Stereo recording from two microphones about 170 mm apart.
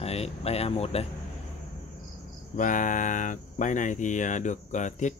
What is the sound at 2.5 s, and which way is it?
Cricket, 50° left (ahead or behind).